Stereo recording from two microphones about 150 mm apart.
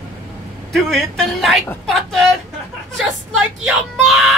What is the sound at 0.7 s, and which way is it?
Speech, centre (ahead or behind).